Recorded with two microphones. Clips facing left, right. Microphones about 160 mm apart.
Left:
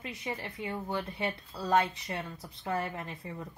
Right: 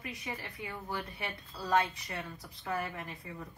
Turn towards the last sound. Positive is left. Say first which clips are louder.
# left 3 dB
turn(degrees=30)  # may be behind; listen again after turning